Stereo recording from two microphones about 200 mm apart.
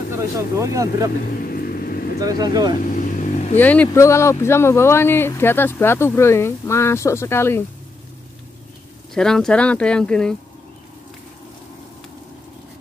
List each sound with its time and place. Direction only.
0.1 s speech: 15° right (ahead or behind)
1.4 s vehicle: 45° left (ahead or behind)
2.1 s speech: 20° right (ahead or behind)
2.8 s vehicle: 40° left (ahead or behind)
3.5 s speech: 10° left (ahead or behind)
9.1 s speech: 5° left (ahead or behind)